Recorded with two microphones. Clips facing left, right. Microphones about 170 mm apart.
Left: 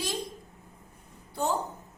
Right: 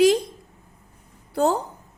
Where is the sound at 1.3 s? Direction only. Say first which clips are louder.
Right 8 dB; 90° right.